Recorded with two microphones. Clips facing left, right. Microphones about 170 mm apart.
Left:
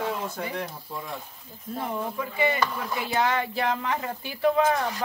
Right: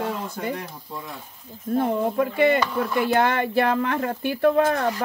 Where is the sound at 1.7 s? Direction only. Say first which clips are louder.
Right 9 dB; 60° right (ahead or behind).